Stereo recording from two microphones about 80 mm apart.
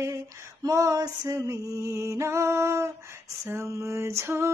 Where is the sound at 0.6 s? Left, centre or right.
Right.